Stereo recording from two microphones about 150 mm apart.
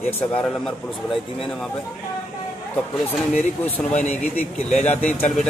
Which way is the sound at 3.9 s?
50° left (ahead or behind).